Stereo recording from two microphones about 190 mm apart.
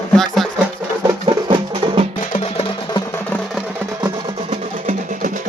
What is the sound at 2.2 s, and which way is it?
Music, 35° left (ahead or behind).